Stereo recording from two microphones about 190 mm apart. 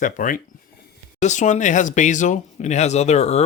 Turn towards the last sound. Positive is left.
turn(degrees=35)  # may be behind; listen again after turning